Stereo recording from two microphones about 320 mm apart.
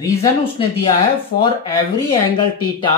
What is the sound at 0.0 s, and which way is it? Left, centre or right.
Speech, centre.